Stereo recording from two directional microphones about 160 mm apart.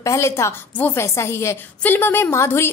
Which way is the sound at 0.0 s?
15° left (ahead or behind).